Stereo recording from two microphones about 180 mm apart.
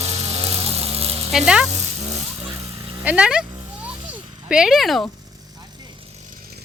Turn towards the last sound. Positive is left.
turn(degrees=0)  # may be behind; listen again after turning